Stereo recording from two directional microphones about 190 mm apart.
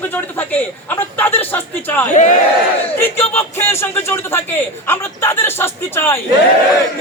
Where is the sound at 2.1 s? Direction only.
40° left (ahead or behind).